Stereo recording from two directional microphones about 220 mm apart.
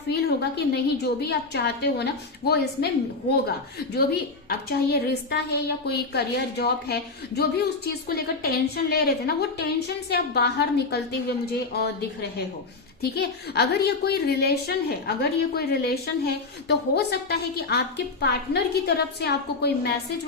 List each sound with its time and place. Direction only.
0.1 s a woman's voice: 45° left (ahead or behind)
13.0 s a woman's voice: 45° left (ahead or behind)